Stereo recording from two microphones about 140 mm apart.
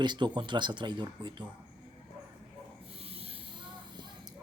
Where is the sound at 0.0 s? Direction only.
35° right (ahead or behind).